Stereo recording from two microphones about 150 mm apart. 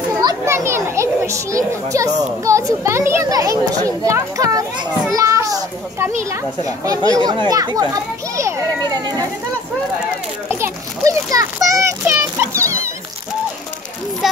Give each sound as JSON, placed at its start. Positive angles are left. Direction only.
{"t": 0.2, "sound": "children playing", "side_deg": -25}
{"t": 2.4, "sound": "a child's voice", "side_deg": -20}
{"t": 10.5, "sound": "a child's voice", "side_deg": -20}
{"t": 14.2, "sound": "a child's voice", "side_deg": -5}